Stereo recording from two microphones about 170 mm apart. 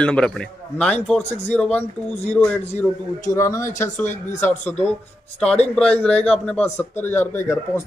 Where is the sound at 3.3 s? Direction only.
20° left (ahead or behind).